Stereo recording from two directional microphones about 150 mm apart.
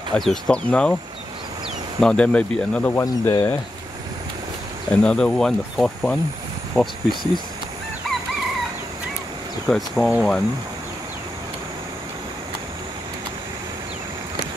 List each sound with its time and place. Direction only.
0.1 s speech: 5° left (ahead or behind)
2.0 s speech: 5° left (ahead or behind)
5.0 s speech: 5° left (ahead or behind)
9.7 s speech: centre (ahead or behind)